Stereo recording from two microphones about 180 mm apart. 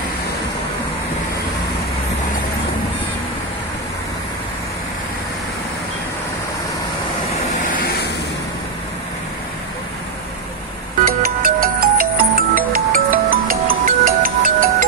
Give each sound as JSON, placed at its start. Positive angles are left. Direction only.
{"t": 7.6, "sound": "waves", "side_deg": 60}
{"t": 11.2, "sound": "music", "side_deg": -55}